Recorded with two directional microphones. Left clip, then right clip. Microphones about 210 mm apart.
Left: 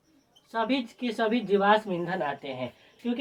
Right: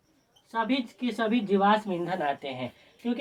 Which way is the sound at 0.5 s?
20° right (ahead or behind).